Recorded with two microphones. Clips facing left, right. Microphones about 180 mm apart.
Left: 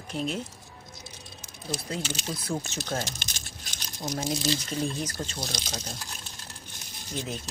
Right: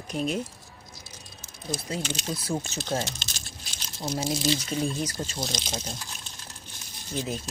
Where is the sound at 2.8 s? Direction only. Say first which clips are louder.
Right 3 dB; 20° right (ahead or behind).